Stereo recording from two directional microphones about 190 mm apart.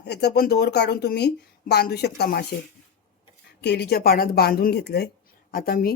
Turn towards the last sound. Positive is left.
turn(degrees=50)  # may be behind; listen again after turning